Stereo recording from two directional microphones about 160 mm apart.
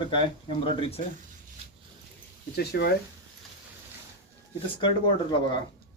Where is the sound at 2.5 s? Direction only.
90° left.